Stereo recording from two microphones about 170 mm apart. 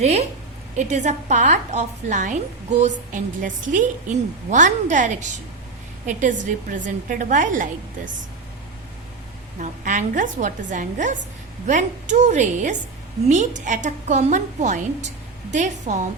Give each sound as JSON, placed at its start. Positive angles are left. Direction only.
{"t": 0.0, "sound": "a woman's voice", "side_deg": -40}
{"t": 9.6, "sound": "a woman's voice", "side_deg": -50}